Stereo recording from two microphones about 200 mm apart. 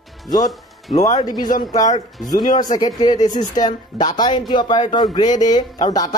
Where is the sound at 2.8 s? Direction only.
20° left (ahead or behind).